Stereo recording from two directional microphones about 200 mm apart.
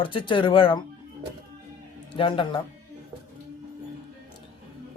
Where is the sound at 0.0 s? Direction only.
25° left (ahead or behind).